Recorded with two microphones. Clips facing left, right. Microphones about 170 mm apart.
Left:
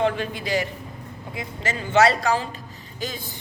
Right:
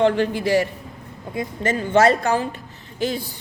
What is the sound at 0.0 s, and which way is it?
Speech, 70° right (ahead or behind).